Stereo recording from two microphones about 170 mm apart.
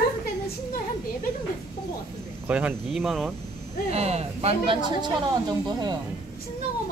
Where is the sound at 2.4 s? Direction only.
10° right (ahead or behind).